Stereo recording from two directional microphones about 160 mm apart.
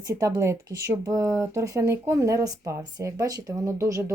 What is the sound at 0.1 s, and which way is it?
Speech, 20° right (ahead or behind).